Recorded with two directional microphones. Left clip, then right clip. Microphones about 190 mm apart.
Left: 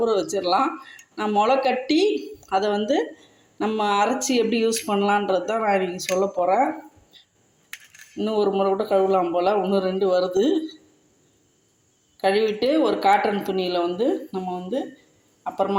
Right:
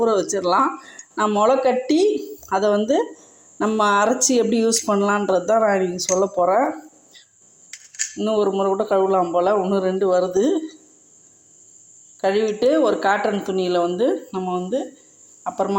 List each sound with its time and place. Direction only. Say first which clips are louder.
0.0 s speech: right 3 dB; 15° right (ahead or behind)
8.1 s speech: right 2 dB; 10° right (ahead or behind)
12.2 s speech: right 2 dB; 10° right (ahead or behind)